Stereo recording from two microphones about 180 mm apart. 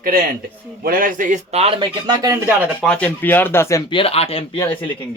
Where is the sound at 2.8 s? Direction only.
5° left (ahead or behind).